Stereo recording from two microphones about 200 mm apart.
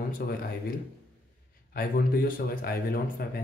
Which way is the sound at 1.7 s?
45° left (ahead or behind).